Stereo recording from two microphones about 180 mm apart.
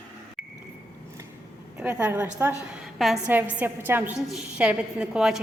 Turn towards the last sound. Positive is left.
turn(degrees=-5)  # may be behind; listen again after turning